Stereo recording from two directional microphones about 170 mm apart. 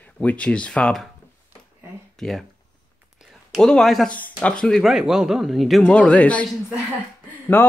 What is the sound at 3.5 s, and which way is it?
Speech, centre (ahead or behind).